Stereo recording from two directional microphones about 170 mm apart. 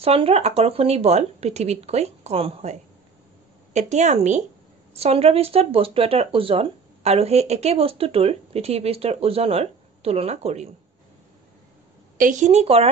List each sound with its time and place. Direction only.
0.0 s speech: 35° right (ahead or behind)
12.2 s speech: 45° right (ahead or behind)